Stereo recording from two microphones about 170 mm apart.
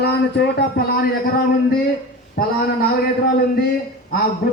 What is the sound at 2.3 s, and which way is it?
Speech, 60° left (ahead or behind).